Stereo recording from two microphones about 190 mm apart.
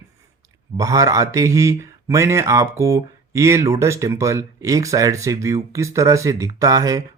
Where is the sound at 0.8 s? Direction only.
15° right (ahead or behind).